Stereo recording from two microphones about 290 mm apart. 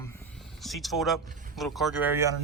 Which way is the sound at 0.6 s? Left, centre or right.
Centre.